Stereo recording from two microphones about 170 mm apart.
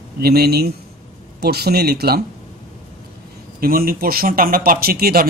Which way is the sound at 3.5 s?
60° right (ahead or behind).